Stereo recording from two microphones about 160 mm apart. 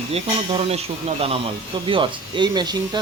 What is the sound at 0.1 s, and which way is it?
Speech, 40° right (ahead or behind).